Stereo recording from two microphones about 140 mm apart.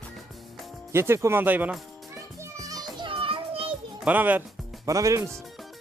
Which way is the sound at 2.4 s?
25° right (ahead or behind).